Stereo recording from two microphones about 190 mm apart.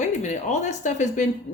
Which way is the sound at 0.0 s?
40° left (ahead or behind).